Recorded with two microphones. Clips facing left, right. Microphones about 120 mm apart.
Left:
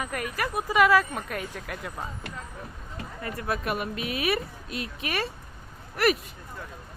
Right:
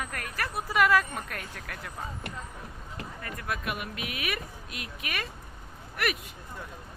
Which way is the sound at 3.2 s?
30° left (ahead or behind).